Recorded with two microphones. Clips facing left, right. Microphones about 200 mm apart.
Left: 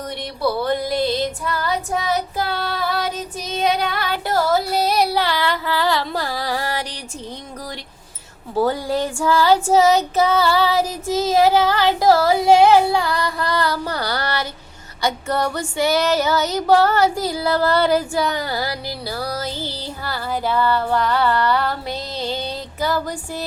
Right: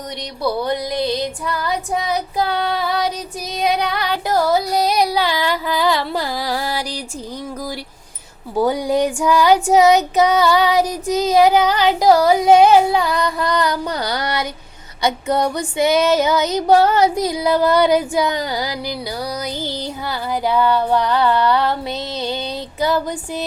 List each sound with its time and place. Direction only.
0.6 s female singing: 15° right (ahead or behind)
2.4 s child singing: 15° right (ahead or behind)
3.9 s female singing: 15° right (ahead or behind)
8.5 s female singing: 15° right (ahead or behind)
22.8 s music: 20° right (ahead or behind)